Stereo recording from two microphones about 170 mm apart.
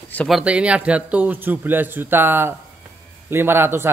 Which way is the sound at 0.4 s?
5° right (ahead or behind).